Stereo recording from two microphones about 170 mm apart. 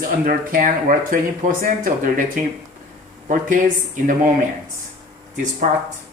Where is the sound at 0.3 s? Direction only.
50° right (ahead or behind).